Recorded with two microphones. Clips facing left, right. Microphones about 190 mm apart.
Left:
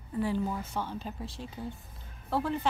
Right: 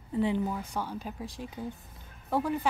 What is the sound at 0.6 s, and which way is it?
Speech, 15° right (ahead or behind).